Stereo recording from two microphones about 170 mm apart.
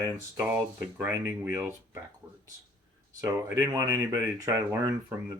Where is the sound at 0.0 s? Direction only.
15° right (ahead or behind).